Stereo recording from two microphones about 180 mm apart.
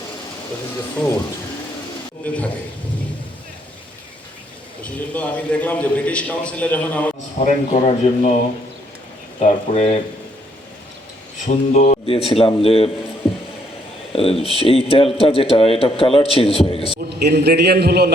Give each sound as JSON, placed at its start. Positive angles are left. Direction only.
{"t": 2.2, "sound": "a man's voice", "side_deg": 10}
{"t": 4.8, "sound": "a man's voice", "side_deg": 10}
{"t": 7.3, "sound": "a man's voice", "side_deg": 40}
{"t": 9.4, "sound": "a man's voice", "side_deg": 40}
{"t": 11.4, "sound": "speech", "side_deg": 45}
{"t": 12.0, "sound": "a man's voice", "side_deg": 30}
{"t": 14.1, "sound": "a man's voice", "side_deg": 30}
{"t": 17.1, "sound": "a man's voice", "side_deg": -65}